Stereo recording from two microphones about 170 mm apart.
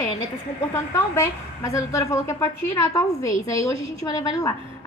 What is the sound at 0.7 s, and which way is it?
A woman's voice, 15° left (ahead or behind).